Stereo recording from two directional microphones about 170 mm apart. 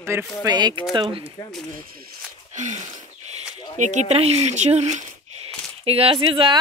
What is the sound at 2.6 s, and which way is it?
Speech, 45° right (ahead or behind).